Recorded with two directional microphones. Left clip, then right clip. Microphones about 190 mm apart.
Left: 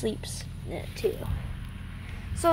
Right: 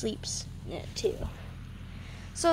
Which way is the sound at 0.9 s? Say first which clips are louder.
Left 1 dB; centre (ahead or behind).